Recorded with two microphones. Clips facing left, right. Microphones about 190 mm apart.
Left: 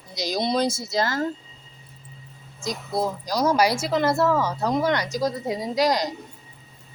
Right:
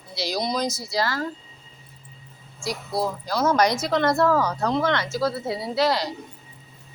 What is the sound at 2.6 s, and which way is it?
A woman's voice, 20° left (ahead or behind).